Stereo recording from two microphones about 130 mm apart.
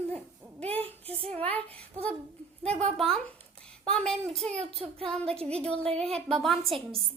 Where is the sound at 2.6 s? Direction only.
55° right (ahead or behind).